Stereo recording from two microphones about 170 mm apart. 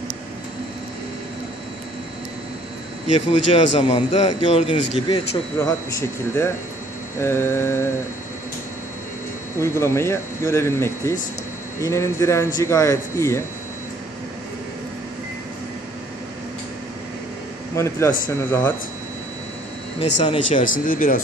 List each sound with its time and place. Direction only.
3.2 s speech: 35° left (ahead or behind)
5.6 s speech: 15° left (ahead or behind)
9.6 s speech: 15° left (ahead or behind)
17.7 s speech: 15° left (ahead or behind)
20.2 s speech: 45° left (ahead or behind)